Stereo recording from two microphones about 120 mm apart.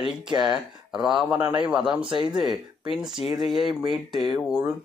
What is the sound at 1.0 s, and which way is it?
A man's voice, 10° right (ahead or behind).